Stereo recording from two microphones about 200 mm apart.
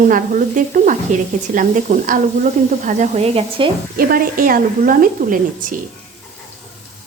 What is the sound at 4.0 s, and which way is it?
A woman's voice, 45° right (ahead or behind).